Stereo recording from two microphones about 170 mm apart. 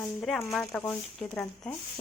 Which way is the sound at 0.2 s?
Centre (ahead or behind).